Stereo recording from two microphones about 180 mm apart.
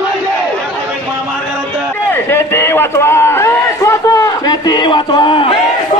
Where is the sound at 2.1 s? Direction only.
15° left (ahead or behind).